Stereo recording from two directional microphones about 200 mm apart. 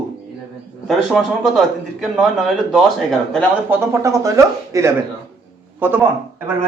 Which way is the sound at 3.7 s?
15° right (ahead or behind).